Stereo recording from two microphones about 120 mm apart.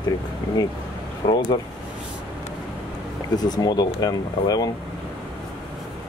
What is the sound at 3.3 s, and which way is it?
Speech, 35° left (ahead or behind).